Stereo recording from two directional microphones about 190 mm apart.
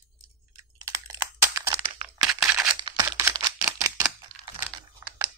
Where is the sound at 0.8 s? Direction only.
15° right (ahead or behind).